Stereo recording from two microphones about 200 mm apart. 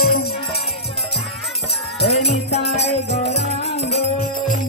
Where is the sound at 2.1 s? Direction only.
30° left (ahead or behind).